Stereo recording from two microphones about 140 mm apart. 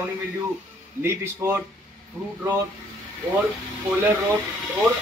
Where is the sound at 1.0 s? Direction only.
20° right (ahead or behind).